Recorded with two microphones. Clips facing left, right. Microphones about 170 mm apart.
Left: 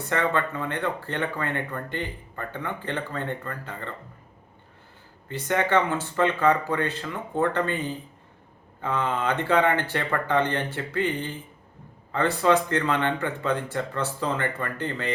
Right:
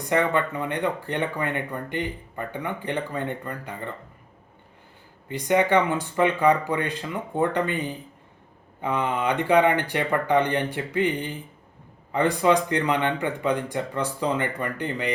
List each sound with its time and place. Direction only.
0.1 s speech: 15° right (ahead or behind)
5.3 s speech: 15° right (ahead or behind)